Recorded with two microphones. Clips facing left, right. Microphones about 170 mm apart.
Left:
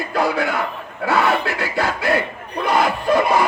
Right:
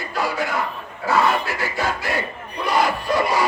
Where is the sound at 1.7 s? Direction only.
60° left (ahead or behind).